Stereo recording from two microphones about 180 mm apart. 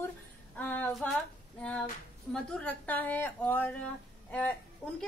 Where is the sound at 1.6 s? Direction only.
5° left (ahead or behind).